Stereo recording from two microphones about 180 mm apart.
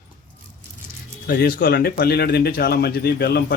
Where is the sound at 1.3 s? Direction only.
55° left (ahead or behind).